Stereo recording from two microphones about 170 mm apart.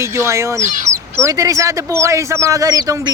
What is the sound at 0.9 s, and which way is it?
Speech, 15° right (ahead or behind).